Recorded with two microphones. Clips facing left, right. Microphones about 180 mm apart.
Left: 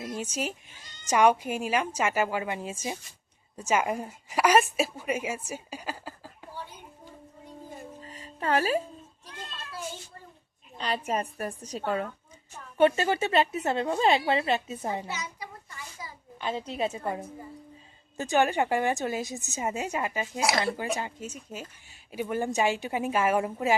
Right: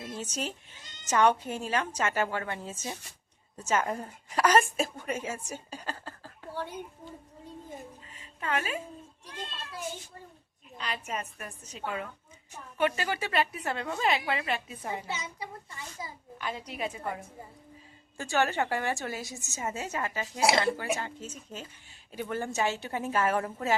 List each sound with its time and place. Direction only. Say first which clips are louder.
0.0 s a woman's voice: left 3 dB; 10° left (ahead or behind)
8.0 s music: left 7 dB; 40° left (ahead or behind)
10.8 s a woman's voice: left 6 dB; 30° left (ahead or behind)
12.7 s a woman's voice: left 7 dB; 25° left (ahead or behind)
15.0 s a child's voice: even; 25° right (ahead or behind)
16.0 s a sound: right 2 dB; 25° right (ahead or behind)
16.4 s a woman's voice: left 5 dB; 25° left (ahead or behind)
20.4 s a child's voice: right 2 dB; 25° right (ahead or behind)
20.7 s a woman's voice: left 1 dB; 15° left (ahead or behind)